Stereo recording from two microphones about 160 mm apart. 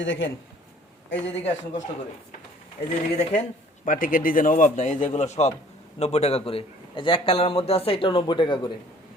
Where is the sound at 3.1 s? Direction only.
45° left (ahead or behind).